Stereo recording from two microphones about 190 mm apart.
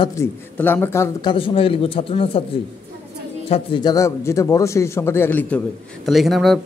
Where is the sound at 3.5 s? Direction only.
25° left (ahead or behind).